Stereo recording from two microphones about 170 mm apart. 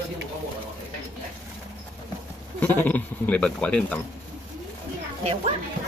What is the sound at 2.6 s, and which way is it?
Speech, 10° left (ahead or behind).